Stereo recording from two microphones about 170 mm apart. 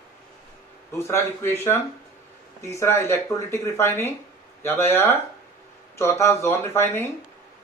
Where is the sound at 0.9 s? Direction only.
15° left (ahead or behind).